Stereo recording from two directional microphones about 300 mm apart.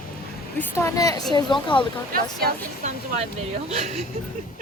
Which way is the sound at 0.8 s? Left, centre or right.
Centre.